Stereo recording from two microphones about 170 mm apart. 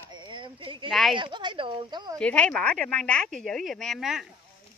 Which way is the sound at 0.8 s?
Centre (ahead or behind).